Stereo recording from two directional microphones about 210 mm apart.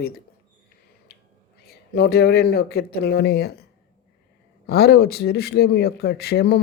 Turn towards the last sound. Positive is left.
turn(degrees=50)  # may be behind; listen again after turning